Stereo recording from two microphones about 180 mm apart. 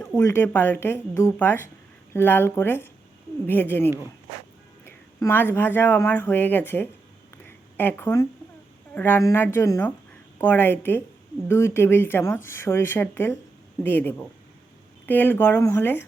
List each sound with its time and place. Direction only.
0.2 s speech: 15° left (ahead or behind)
4.9 s speech: 10° left (ahead or behind)
7.4 s a sound: 10° left (ahead or behind)
9.0 s speech: 10° left (ahead or behind)